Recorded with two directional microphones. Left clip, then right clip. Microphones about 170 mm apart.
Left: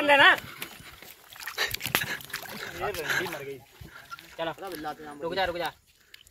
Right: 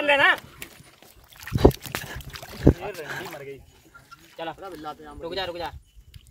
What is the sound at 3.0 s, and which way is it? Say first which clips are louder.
Speech: left 5 dB; 15° right (ahead or behind).